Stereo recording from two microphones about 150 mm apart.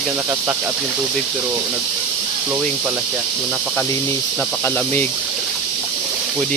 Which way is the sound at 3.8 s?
15° left (ahead or behind).